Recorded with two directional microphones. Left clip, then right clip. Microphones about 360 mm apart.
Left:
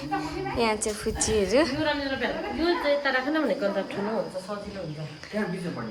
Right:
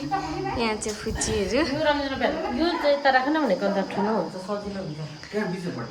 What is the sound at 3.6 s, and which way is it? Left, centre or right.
Speech, right.